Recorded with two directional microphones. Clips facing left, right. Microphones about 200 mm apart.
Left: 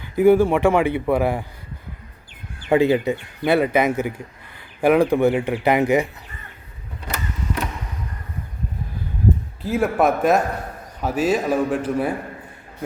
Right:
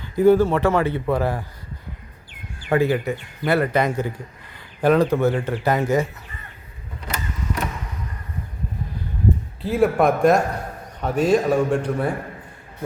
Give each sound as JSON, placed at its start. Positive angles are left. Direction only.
{"t": 0.0, "sound": "speech", "side_deg": 10}
{"t": 2.6, "sound": "speech", "side_deg": 20}
{"t": 9.6, "sound": "a man's voice", "side_deg": 0}